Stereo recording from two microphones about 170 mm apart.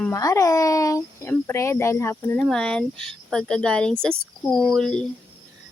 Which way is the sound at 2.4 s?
5° left (ahead or behind).